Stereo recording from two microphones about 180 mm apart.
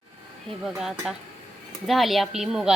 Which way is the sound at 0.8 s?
Centre (ahead or behind).